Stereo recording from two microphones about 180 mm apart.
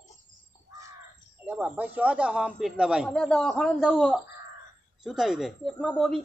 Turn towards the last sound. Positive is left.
turn(degrees=5)  # may be behind; listen again after turning